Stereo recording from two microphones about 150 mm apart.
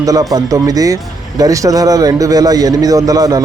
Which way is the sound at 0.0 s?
25° right (ahead or behind).